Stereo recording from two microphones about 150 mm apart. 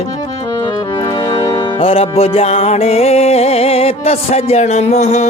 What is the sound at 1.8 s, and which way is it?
Music, 40° left (ahead or behind).